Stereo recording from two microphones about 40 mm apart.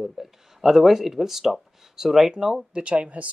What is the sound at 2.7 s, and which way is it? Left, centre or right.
Speech, right.